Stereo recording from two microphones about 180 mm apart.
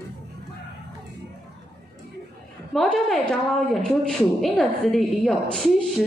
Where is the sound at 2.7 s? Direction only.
Centre (ahead or behind).